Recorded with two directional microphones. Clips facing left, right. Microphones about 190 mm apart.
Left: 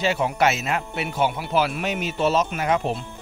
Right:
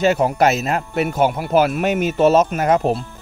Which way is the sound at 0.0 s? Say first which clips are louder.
Right 6 dB; 45° right (ahead or behind).